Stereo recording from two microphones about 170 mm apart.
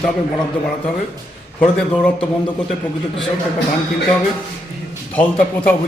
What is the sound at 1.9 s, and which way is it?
Speech, 5° left (ahead or behind).